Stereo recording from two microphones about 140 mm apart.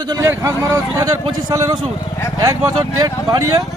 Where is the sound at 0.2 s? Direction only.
20° right (ahead or behind).